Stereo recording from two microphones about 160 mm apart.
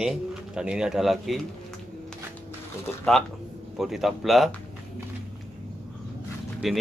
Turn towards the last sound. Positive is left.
turn(degrees=0)  # may be behind; listen again after turning